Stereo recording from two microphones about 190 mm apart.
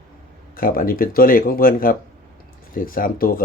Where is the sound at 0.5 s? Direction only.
50° left (ahead or behind).